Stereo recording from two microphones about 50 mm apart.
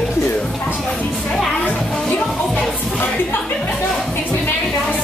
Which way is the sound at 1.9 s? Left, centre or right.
Centre.